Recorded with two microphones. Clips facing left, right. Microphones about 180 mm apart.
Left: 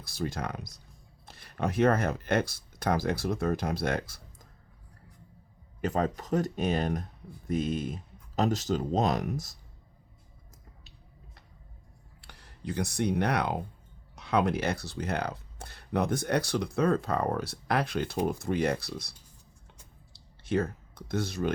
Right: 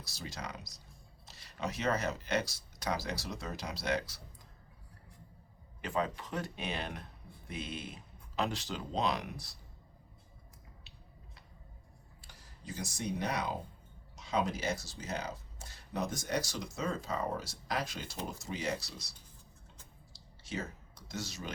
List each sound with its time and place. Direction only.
0.0 s speech: 55° left (ahead or behind)
5.8 s speech: 45° left (ahead or behind)
12.2 s speech: 65° left (ahead or behind)
20.1 s clicking: 55° left (ahead or behind)